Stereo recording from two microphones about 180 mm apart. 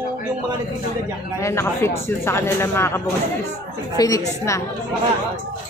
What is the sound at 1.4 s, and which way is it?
A woman's voice, 15° left (ahead or behind).